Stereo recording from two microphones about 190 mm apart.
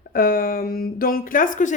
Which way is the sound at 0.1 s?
50° left (ahead or behind).